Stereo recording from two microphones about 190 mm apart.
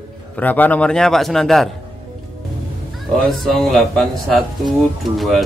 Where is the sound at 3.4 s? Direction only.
Centre (ahead or behind).